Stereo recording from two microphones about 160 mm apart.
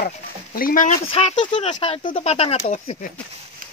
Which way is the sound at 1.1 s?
35° left (ahead or behind).